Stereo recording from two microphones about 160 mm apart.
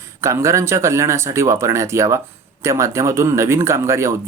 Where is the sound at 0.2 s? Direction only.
15° right (ahead or behind).